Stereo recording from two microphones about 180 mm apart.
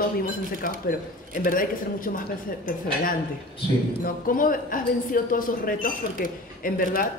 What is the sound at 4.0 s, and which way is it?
Speech, 50° left (ahead or behind).